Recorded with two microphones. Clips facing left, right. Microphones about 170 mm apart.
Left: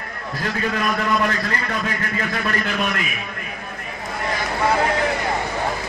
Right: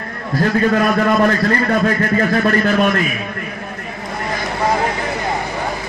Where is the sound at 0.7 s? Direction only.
45° right (ahead or behind).